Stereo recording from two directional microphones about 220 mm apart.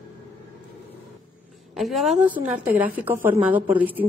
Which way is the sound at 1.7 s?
Centre (ahead or behind).